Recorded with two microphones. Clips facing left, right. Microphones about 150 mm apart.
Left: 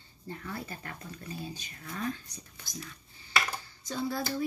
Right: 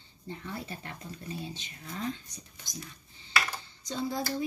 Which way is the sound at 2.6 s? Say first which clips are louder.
Left 1 dB; 20° right (ahead or behind).